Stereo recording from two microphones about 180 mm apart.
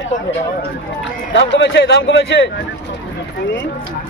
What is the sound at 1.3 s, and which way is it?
A man's voice, 85° left.